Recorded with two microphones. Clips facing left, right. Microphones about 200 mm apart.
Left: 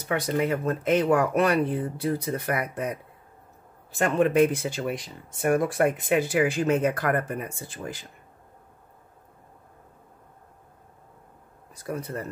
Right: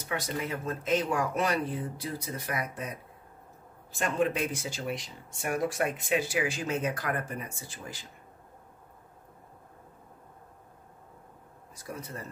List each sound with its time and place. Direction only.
0.0 s speech: 60° left (ahead or behind)
4.0 s speech: 55° left (ahead or behind)
11.8 s speech: 60° left (ahead or behind)